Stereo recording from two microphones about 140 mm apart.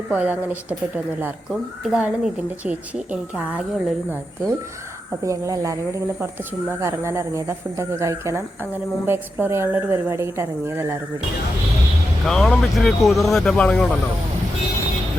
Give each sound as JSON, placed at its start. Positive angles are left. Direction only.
{"t": 0.1, "sound": "speech", "side_deg": -10}
{"t": 5.2, "sound": "speech", "side_deg": -20}
{"t": 12.2, "sound": "speech", "side_deg": 5}